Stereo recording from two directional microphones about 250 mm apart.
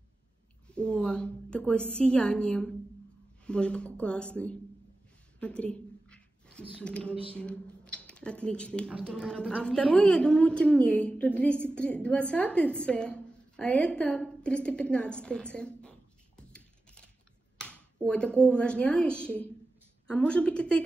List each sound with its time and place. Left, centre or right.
0.7 s a woman's voice: centre
17.6 s a woman's voice: centre